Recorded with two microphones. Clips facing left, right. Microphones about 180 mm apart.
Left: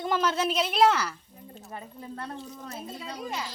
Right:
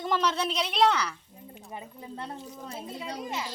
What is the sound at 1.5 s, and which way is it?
Speech, 15° right (ahead or behind).